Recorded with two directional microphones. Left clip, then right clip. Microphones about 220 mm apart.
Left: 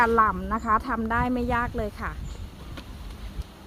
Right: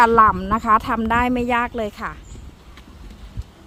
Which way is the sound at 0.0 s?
40° right (ahead or behind).